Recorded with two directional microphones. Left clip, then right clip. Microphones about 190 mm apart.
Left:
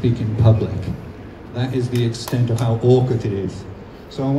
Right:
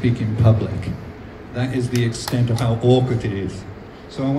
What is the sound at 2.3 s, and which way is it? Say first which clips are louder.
Speech: even; 30° right (ahead or behind).